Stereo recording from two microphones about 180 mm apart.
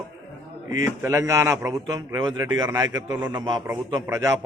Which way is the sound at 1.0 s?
15° right (ahead or behind).